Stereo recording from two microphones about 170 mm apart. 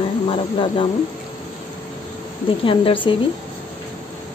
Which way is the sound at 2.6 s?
30° left (ahead or behind).